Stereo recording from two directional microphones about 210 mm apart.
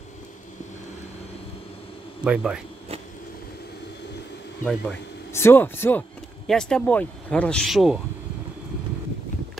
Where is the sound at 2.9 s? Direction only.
30° right (ahead or behind).